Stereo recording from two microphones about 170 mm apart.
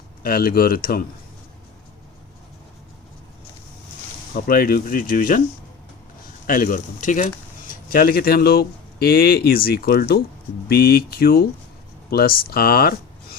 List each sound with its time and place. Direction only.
0.2 s speech: 60° left (ahead or behind)
4.4 s speech: 60° left (ahead or behind)
6.5 s speech: 55° left (ahead or behind)
7.7 s speech: 60° left (ahead or behind)